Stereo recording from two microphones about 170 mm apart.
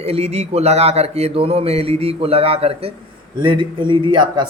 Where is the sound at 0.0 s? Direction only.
40° right (ahead or behind).